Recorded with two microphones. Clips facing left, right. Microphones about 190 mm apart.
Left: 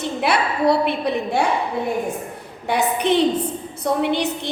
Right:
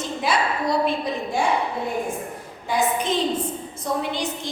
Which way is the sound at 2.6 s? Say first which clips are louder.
Left 3 dB; 65° left (ahead or behind).